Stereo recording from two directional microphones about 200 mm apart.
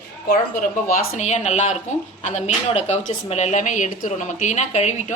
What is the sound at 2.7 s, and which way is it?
Speech, 35° left (ahead or behind).